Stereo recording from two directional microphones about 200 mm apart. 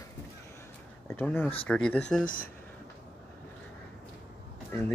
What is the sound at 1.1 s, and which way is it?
Speech, 10° left (ahead or behind).